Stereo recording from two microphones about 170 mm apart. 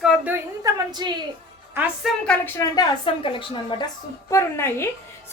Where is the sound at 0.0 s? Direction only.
5° right (ahead or behind).